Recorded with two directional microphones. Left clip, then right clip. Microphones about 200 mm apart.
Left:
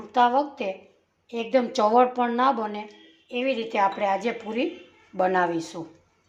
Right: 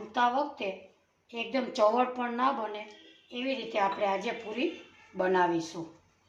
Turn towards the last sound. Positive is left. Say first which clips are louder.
# left 4 dB
turn(degrees=55)  # may be behind; listen again after turning